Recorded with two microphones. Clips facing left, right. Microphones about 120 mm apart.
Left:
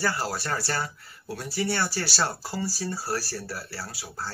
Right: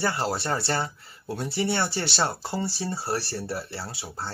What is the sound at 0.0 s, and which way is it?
Speech, 25° right (ahead or behind).